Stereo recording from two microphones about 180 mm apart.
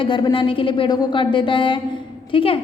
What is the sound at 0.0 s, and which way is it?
A woman's voice, 25° left (ahead or behind).